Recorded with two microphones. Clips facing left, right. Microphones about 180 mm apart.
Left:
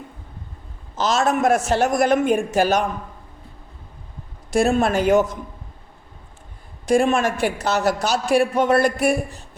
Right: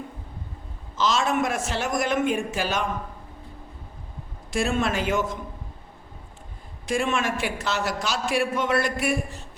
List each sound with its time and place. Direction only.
0.9 s a man's voice: 40° left (ahead or behind)
4.5 s a man's voice: 40° left (ahead or behind)
6.8 s a man's voice: 40° left (ahead or behind)